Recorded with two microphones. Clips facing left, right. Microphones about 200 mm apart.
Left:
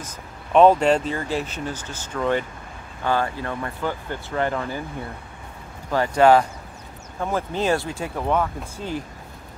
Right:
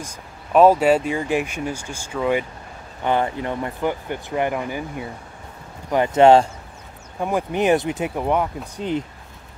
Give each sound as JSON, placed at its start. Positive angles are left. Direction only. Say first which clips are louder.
{"t": 0.0, "sound": "speech", "louder": "right 1 dB", "side_deg": -5}
{"t": 7.2, "sound": "speech", "louder": "right 3 dB", "side_deg": -15}